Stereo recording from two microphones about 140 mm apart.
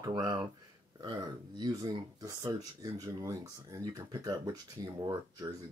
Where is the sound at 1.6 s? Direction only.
30° right (ahead or behind).